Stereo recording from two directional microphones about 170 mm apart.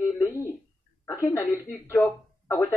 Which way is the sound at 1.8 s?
15° left (ahead or behind).